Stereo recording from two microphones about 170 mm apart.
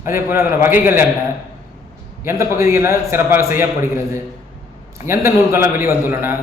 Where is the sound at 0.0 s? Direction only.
15° right (ahead or behind).